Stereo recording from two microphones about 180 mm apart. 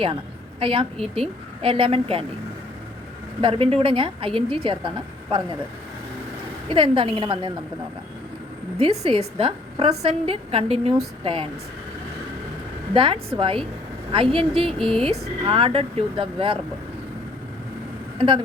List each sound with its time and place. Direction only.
0.6 s a woman's voice: 30° right (ahead or behind)
3.4 s a woman's voice: 30° right (ahead or behind)
6.7 s a woman's voice: 30° right (ahead or behind)
8.8 s a woman's voice: 30° right (ahead or behind)
12.9 s a woman's voice: 30° right (ahead or behind)